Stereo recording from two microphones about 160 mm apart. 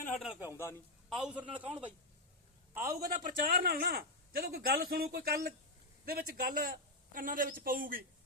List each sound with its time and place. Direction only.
0.2 s a man's voice: centre (ahead or behind)
0.5 s a man's voice: 15° left (ahead or behind)
1.1 s a man's voice: 10° right (ahead or behind)
1.6 s speech: 30° right (ahead or behind)
2.7 s a man's voice: 20° right (ahead or behind)
3.2 s a man's voice: 65° right (ahead or behind)